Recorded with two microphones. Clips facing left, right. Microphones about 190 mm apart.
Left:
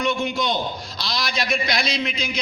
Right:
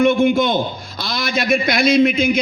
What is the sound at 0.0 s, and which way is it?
A man's voice, 55° right (ahead or behind).